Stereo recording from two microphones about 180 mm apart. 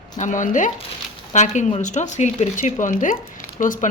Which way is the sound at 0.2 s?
45° left (ahead or behind).